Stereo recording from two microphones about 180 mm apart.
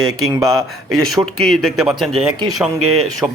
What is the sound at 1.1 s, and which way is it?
Speech, centre (ahead or behind).